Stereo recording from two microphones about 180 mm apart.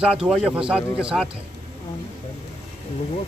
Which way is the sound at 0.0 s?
5° right (ahead or behind).